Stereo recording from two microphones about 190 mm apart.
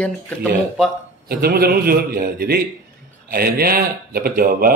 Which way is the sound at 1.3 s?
55° right (ahead or behind).